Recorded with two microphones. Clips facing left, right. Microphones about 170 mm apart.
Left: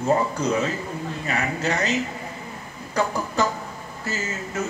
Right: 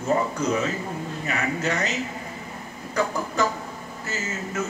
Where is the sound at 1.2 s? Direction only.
35° left (ahead or behind).